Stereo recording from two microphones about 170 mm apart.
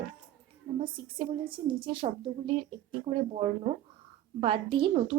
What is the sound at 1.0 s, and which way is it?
A woman's voice, 30° right (ahead or behind).